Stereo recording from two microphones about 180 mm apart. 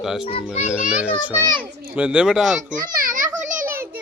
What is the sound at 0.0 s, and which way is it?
Speech, centre (ahead or behind).